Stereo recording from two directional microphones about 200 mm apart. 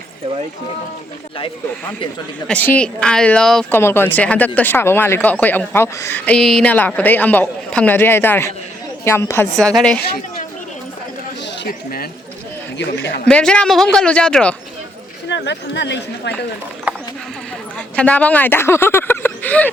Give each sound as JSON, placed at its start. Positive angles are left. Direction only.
{"t": 2.5, "sound": "speech", "side_deg": 5}
{"t": 11.6, "sound": "a woman's voice", "side_deg": 50}
{"t": 13.2, "sound": "speech", "side_deg": 5}
{"t": 15.3, "sound": "speech", "side_deg": 60}
{"t": 16.9, "sound": "clip-clop", "side_deg": -10}
{"t": 17.7, "sound": "speech", "side_deg": 5}